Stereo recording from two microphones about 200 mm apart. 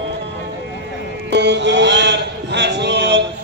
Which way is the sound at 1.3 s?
60° right (ahead or behind).